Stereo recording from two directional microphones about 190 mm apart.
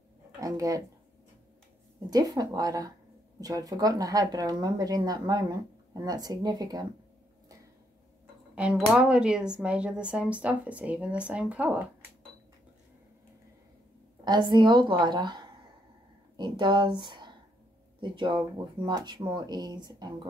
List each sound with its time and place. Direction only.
0.4 s speech: 15° right (ahead or behind)
2.0 s speech: 20° right (ahead or behind)
8.5 s speech: 5° right (ahead or behind)
14.2 s speech: 20° right (ahead or behind)